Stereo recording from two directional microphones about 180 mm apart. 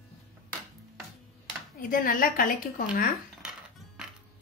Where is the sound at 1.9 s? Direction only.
50° left (ahead or behind).